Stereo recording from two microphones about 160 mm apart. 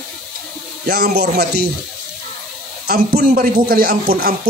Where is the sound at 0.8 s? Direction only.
90° right.